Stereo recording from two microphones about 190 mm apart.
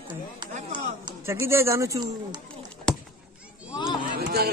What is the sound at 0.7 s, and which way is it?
Speech, 20° right (ahead or behind).